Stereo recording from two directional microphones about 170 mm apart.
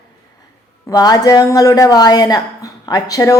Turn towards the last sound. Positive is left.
turn(degrees=20)  # may be behind; listen again after turning